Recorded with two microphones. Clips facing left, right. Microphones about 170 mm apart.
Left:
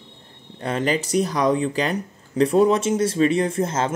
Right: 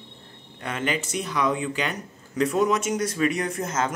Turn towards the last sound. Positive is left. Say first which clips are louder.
# left 5 dB
turn(degrees=30)  # may be behind; listen again after turning